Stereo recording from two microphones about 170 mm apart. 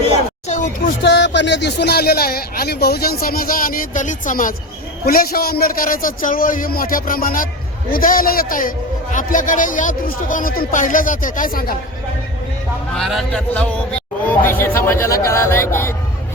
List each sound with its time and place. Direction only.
0.0 s a sound: 40° left (ahead or behind)
1.0 s speech: 90° left; by 4.5 s 50° left (ahead or behind)
5.0 s speech: 60° left (ahead or behind)
12.9 s speech: centre (ahead or behind)